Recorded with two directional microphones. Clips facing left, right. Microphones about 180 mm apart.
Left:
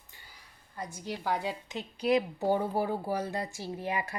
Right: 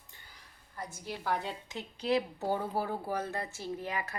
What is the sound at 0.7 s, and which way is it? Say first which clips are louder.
A woman's voice: left 3 dB; 15° left (ahead or behind).